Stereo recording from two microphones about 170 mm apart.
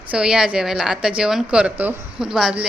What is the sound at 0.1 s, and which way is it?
A woman's voice, 5° right (ahead or behind).